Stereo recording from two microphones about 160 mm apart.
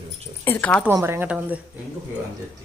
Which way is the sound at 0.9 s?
15° right (ahead or behind).